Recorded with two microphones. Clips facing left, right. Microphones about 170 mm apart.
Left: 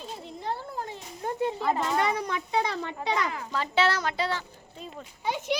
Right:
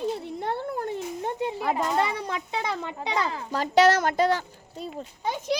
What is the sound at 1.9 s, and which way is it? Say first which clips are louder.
A child's voice: right 1 dB; 30° right (ahead or behind).